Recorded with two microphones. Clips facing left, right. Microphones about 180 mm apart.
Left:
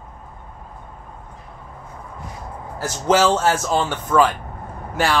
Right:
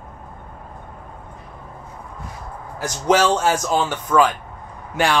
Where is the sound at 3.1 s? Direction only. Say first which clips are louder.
Left 3 dB; 10° right (ahead or behind).